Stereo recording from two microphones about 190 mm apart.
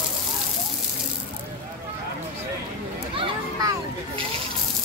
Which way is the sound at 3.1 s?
25° right (ahead or behind).